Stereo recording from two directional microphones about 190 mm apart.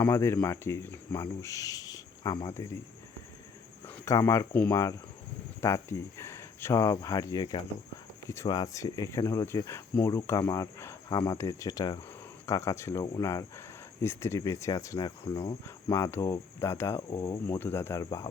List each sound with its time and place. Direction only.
0.0 s cricket: 15° left (ahead or behind)
0.4 s speech: 15° left (ahead or behind)
3.8 s speech: 10° left (ahead or behind)
8.3 s cricket: 20° left (ahead or behind)
11.2 s speech: 20° left (ahead or behind)
12.5 s cricket: 15° left (ahead or behind)